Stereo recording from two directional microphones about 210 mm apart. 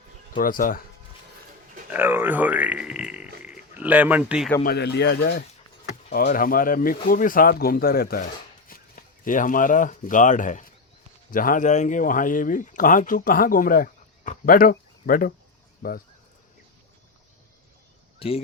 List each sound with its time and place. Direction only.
0.3 s speech: 40° left (ahead or behind)
1.9 s speech: 10° right (ahead or behind)
4.6 s speech: 50° left (ahead or behind)
18.2 s speech: 25° left (ahead or behind)